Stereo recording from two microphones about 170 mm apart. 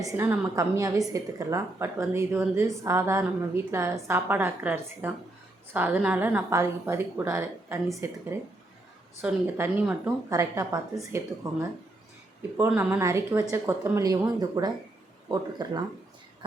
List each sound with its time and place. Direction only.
0.0 s a woman's voice: 15° right (ahead or behind)
9.2 s a woman's voice: 10° right (ahead or behind)
12.5 s a woman's voice: 10° right (ahead or behind)